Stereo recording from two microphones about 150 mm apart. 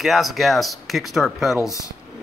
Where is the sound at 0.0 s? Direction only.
Centre (ahead or behind).